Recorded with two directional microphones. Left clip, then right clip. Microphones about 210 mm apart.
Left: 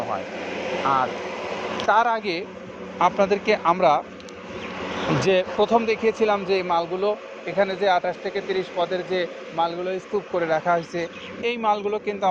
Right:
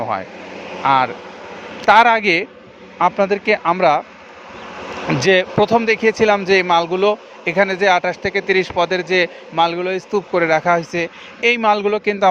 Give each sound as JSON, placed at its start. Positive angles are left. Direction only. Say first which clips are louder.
{"t": 1.9, "sound": "speech", "louder": "right 10 dB", "side_deg": -50}
{"t": 3.0, "sound": "speech", "louder": "right 4 dB", "side_deg": -30}
{"t": 5.0, "sound": "speech", "louder": "right 6 dB", "side_deg": -35}